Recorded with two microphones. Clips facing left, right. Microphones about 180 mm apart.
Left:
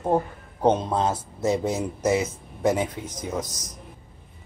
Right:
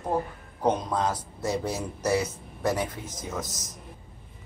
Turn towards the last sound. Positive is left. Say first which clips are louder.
# left 4 dB
turn(degrees=20)  # may be behind; listen again after turning